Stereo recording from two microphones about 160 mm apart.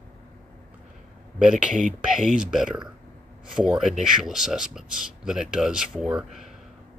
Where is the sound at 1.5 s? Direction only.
50° right (ahead or behind).